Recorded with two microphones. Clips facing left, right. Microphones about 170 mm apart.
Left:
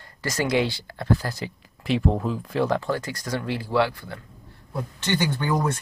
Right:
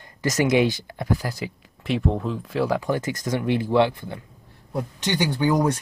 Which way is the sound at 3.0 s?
20° right (ahead or behind).